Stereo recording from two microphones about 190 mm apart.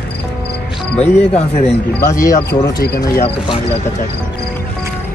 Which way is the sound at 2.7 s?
50° left (ahead or behind).